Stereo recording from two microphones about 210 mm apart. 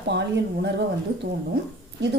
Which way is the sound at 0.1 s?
55° right (ahead or behind).